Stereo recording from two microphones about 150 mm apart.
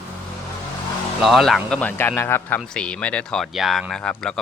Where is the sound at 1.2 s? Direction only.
Centre (ahead or behind).